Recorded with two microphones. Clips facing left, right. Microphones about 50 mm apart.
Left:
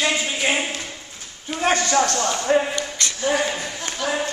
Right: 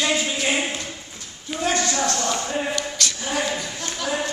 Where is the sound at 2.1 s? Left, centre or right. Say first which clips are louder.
Left 1 dB; centre.